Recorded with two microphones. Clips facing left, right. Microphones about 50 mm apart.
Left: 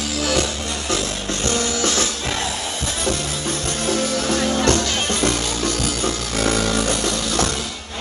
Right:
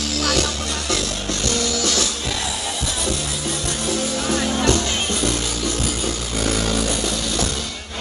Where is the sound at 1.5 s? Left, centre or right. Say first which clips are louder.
Left 2 dB; left.